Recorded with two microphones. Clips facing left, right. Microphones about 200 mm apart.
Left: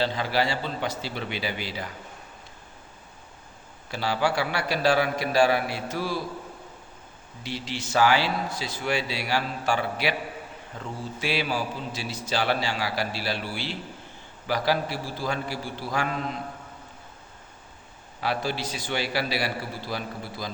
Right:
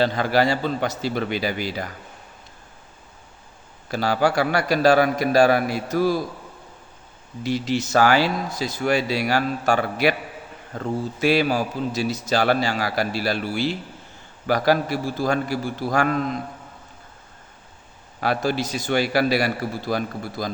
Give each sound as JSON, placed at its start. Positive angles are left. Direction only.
{"t": 0.0, "sound": "a man's voice", "side_deg": -50}
{"t": 3.9, "sound": "a man's voice", "side_deg": -45}
{"t": 7.4, "sound": "a man's voice", "side_deg": -45}
{"t": 18.2, "sound": "a man's voice", "side_deg": -45}